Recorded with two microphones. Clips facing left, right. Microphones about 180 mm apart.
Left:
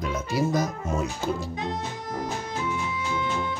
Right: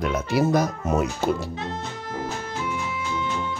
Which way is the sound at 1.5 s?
15° left (ahead or behind).